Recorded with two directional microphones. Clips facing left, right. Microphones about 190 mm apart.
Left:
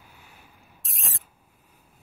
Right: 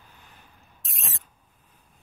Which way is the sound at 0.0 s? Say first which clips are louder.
Left 1 dB; 10° left (ahead or behind).